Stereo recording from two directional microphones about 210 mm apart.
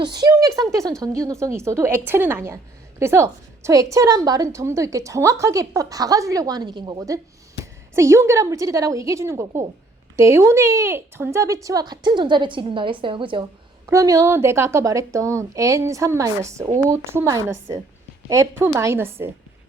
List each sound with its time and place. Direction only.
0.0 s a woman's voice: 20° right (ahead or behind)